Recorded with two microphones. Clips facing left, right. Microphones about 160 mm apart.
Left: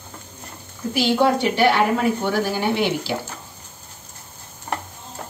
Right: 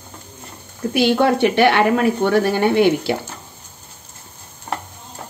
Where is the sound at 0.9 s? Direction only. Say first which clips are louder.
Right 3 dB; 60° right (ahead or behind).